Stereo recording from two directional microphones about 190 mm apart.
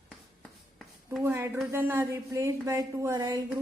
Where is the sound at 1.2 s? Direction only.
10° right (ahead or behind).